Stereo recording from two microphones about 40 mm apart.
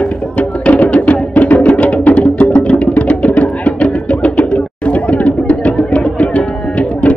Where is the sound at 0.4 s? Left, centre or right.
Left.